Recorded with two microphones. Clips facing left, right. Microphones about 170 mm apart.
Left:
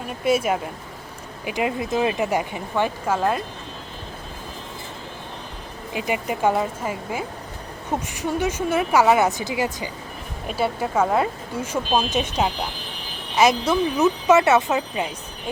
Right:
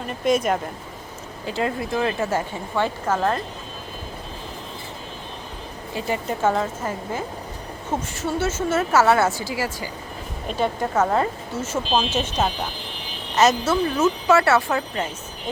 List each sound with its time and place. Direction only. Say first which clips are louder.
0.1 s a woman's voice: even; 5° left (ahead or behind)
5.9 s a woman's voice: left 1 dB; 15° left (ahead or behind)
10.5 s a woman's voice: even; 10° left (ahead or behind)